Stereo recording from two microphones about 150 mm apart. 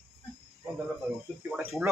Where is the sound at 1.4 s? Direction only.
5° right (ahead or behind).